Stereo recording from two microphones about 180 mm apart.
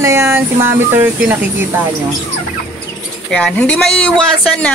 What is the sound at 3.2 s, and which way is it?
Speech, 5° left (ahead or behind).